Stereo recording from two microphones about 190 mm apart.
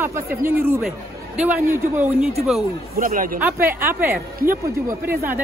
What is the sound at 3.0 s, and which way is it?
Speech, 50° right (ahead or behind).